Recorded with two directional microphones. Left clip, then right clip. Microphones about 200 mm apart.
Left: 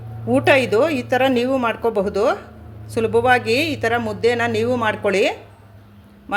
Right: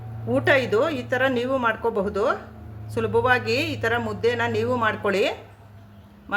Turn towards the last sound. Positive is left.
turn(degrees=15)  # may be behind; listen again after turning